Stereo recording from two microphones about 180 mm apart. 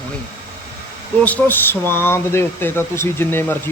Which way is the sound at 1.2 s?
10° left (ahead or behind).